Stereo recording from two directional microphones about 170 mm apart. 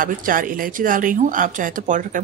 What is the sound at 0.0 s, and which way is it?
Speech, 55° right (ahead or behind).